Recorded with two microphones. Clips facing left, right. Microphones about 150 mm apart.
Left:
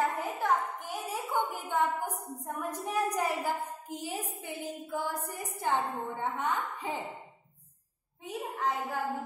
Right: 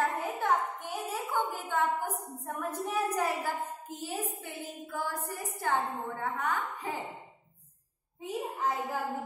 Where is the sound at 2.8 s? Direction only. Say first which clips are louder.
Even; 15° left (ahead or behind).